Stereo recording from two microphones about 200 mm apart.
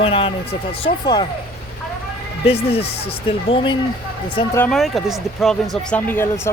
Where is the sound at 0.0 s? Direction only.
25° left (ahead or behind).